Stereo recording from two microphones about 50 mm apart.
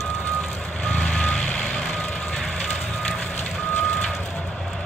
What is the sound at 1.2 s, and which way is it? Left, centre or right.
Reversing beeps, left.